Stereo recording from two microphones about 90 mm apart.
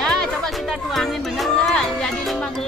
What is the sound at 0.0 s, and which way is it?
Music, 5° left (ahead or behind).